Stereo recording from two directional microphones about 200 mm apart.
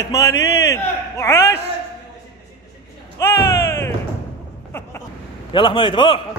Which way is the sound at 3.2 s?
15° left (ahead or behind).